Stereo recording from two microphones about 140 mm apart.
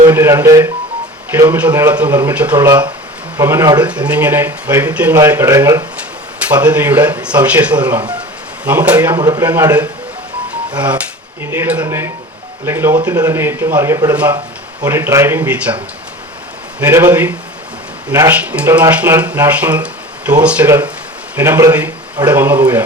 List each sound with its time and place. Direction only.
0.0 s speech: 20° right (ahead or behind)
2.6 s speech: 30° right (ahead or behind)
3.3 s speech: 20° right (ahead or behind)
3.8 s speech: 10° right (ahead or behind)
6.5 s speech: 10° right (ahead or behind)
9.1 s speech: 30° right (ahead or behind)
9.4 s speech: 15° right (ahead or behind)
10.8 s speech: 10° right (ahead or behind)
16.8 s speech: 15° right (ahead or behind)
18.1 s speech: 15° right (ahead or behind)